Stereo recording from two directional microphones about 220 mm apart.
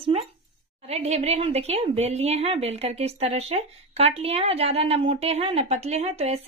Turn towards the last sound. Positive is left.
turn(degrees=-30)  # may be behind; listen again after turning